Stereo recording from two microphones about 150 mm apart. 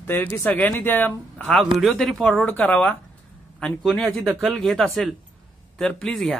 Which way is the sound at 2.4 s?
10° left (ahead or behind).